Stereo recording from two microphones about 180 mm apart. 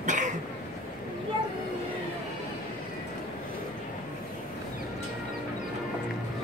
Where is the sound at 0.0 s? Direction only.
45° right (ahead or behind).